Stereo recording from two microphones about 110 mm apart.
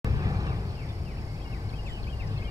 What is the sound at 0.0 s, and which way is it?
Vehicle, 35° right (ahead or behind).